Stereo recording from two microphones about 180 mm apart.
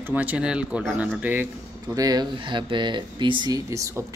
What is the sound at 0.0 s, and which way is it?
A man's voice, 10° right (ahead or behind).